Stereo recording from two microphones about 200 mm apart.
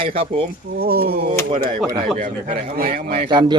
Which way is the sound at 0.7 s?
50° right (ahead or behind).